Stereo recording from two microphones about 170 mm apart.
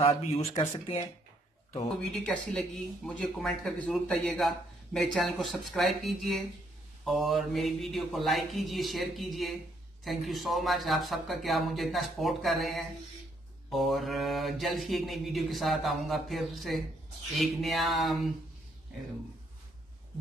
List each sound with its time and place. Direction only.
0.0 s speech: 35° left (ahead or behind)
2.1 s speech: 5° left (ahead or behind)